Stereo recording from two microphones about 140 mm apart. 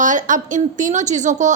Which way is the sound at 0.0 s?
65° right (ahead or behind).